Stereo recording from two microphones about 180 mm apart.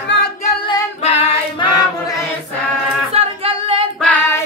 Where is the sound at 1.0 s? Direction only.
35° left (ahead or behind).